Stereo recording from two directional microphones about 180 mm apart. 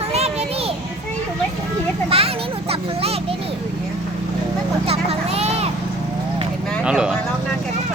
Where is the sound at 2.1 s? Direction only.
35° right (ahead or behind).